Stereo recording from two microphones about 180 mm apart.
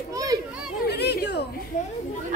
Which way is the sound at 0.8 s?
65° left (ahead or behind).